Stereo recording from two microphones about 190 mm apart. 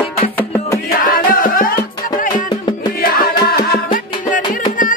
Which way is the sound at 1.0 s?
45° left (ahead or behind).